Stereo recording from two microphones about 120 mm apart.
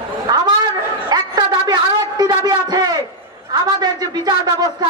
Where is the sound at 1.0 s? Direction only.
35° right (ahead or behind).